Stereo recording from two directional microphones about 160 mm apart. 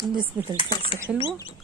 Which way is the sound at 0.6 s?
30° left (ahead or behind).